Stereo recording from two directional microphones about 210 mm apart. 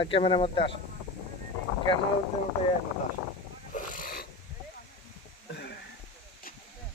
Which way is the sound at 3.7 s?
40° left (ahead or behind).